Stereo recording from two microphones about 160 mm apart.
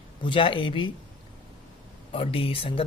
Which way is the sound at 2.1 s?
35° left (ahead or behind).